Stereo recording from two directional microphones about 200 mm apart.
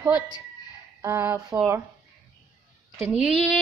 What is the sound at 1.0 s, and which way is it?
Speech, 15° right (ahead or behind).